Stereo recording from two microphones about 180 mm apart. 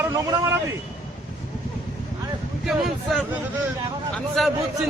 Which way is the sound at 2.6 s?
Centre (ahead or behind).